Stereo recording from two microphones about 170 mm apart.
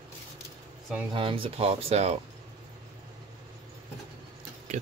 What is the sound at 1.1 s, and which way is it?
Speech, 30° right (ahead or behind).